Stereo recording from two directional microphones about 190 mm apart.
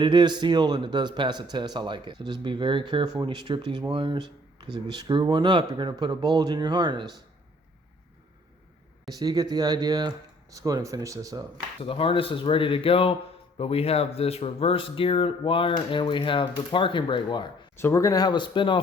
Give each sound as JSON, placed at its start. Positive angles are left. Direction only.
{"t": 0.0, "sound": "speech", "side_deg": -25}
{"t": 9.1, "sound": "speech", "side_deg": -20}
{"t": 11.8, "sound": "speech", "side_deg": 30}
{"t": 17.7, "sound": "speech", "side_deg": 15}